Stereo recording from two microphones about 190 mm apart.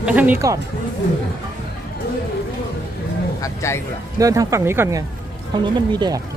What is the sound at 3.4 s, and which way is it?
Speech, 15° left (ahead or behind).